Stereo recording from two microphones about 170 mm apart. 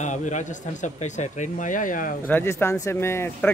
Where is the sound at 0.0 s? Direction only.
45° left (ahead or behind).